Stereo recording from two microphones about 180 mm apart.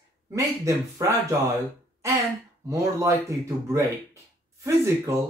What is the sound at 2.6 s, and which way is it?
Speech, 15° right (ahead or behind).